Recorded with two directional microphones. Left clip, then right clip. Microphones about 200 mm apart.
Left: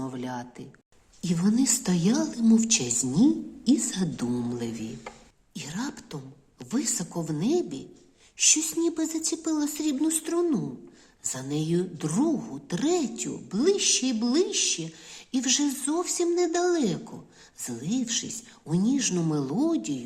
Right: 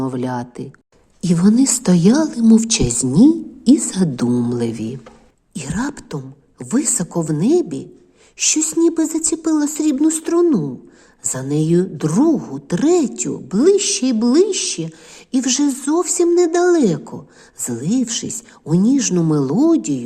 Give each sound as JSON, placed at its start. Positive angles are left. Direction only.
{"t": 0.0, "sound": "a woman's voice", "side_deg": -40}